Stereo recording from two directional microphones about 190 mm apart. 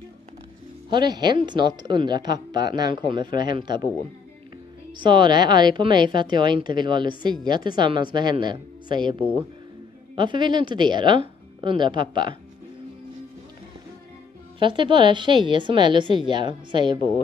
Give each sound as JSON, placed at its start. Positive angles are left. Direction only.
{"t": 0.9, "sound": "a woman's voice", "side_deg": -20}
{"t": 4.9, "sound": "a woman's voice", "side_deg": -25}
{"t": 10.1, "sound": "a woman's voice", "side_deg": -25}
{"t": 14.6, "sound": "a woman's voice", "side_deg": -25}